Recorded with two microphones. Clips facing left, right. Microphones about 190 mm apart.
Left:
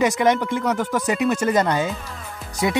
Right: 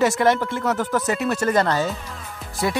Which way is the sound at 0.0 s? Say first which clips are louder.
Even; 15° left (ahead or behind).